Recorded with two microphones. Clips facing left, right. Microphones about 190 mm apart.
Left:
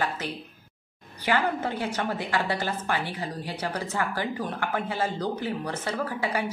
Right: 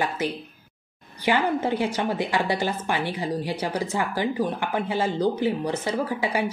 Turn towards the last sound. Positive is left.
turn(degrees=-15)  # may be behind; listen again after turning